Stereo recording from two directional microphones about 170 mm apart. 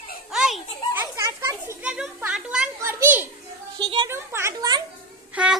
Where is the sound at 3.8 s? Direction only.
25° right (ahead or behind).